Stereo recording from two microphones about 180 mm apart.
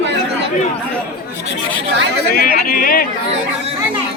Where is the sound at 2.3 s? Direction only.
55° left (ahead or behind).